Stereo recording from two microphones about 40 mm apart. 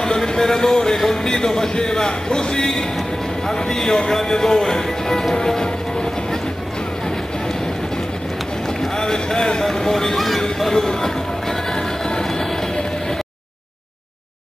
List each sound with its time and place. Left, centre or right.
0.0 s music: centre
1.2 s a man's voice: centre
5.3 s music: centre
8.8 s speech: centre
10.7 s music: centre